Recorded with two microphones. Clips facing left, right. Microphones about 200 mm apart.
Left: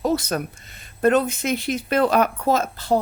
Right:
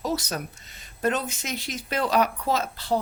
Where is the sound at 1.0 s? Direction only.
55° left (ahead or behind).